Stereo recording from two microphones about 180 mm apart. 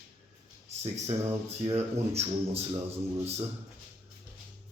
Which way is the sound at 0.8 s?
35° right (ahead or behind).